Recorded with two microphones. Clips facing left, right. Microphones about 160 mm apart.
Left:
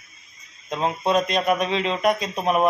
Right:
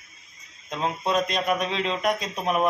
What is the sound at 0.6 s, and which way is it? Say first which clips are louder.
Speech: left 4 dB; 5° left (ahead or behind).